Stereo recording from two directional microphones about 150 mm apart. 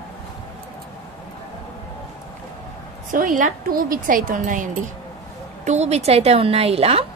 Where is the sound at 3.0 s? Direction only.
65° right (ahead or behind).